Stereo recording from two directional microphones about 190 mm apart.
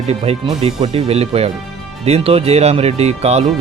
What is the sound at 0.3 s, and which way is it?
Speech, 35° right (ahead or behind).